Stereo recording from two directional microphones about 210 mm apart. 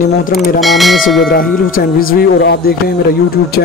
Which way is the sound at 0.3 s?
Centre (ahead or behind).